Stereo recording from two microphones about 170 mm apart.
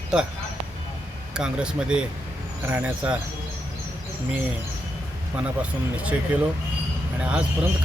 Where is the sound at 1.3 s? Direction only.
5° right (ahead or behind).